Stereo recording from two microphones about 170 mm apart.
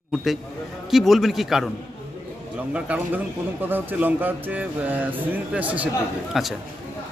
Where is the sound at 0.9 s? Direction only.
Centre (ahead or behind).